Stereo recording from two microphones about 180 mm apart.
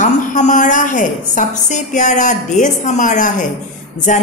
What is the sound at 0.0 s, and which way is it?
A woman's voice, 45° left (ahead or behind).